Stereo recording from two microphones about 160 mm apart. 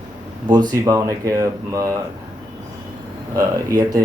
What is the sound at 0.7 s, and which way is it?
Speech, 20° right (ahead or behind).